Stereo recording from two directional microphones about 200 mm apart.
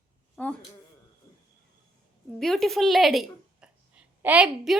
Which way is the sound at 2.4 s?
Centre (ahead or behind).